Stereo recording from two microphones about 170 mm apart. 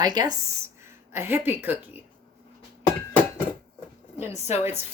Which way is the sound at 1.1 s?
15° right (ahead or behind).